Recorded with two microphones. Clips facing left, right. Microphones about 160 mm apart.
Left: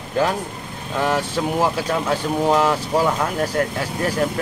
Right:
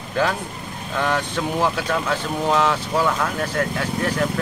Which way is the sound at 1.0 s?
10° left (ahead or behind).